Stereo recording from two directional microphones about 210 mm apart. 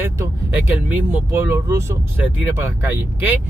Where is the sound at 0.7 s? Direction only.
10° right (ahead or behind).